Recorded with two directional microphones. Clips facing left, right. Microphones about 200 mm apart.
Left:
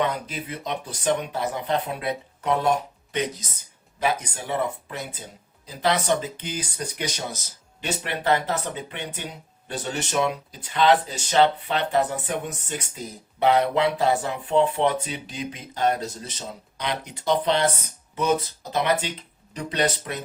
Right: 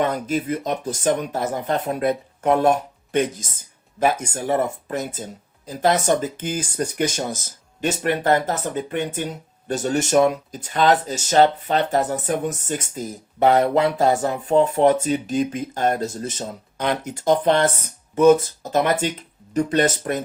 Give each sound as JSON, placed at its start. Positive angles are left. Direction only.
{"t": 0.0, "sound": "speech", "side_deg": -45}